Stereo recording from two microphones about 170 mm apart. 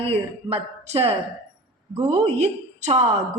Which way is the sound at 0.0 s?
35° right (ahead or behind).